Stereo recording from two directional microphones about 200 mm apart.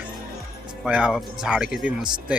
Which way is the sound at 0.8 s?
5° right (ahead or behind).